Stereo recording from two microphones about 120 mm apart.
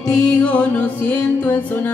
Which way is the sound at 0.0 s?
5° left (ahead or behind).